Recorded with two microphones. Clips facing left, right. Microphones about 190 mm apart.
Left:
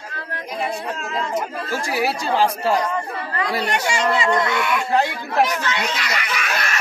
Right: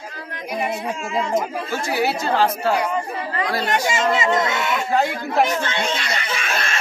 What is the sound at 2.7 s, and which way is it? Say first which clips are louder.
Speech: even; 15° right (ahead or behind).